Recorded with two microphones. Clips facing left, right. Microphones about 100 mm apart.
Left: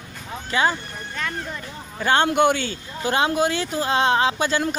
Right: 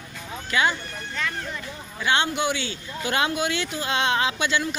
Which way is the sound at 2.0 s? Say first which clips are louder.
Left 6 dB; 45° left (ahead or behind).